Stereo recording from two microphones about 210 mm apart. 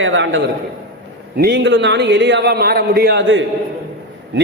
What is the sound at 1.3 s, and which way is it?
A man's voice, 50° right (ahead or behind).